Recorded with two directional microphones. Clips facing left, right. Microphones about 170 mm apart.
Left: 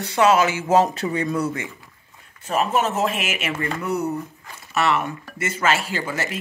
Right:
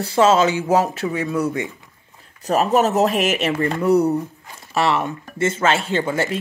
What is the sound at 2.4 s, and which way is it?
Speech, 40° right (ahead or behind).